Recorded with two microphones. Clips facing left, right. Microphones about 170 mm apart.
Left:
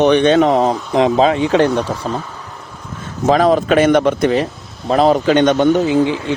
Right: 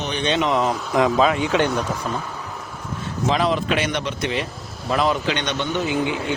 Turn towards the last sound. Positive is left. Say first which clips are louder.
# left 7 dB
turn(degrees=30)  # may be behind; listen again after turning